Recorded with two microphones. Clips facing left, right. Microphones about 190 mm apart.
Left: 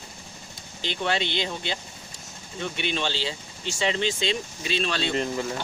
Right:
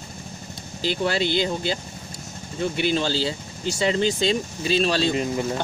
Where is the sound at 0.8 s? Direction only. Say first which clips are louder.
Right 4 dB; 35° right (ahead or behind).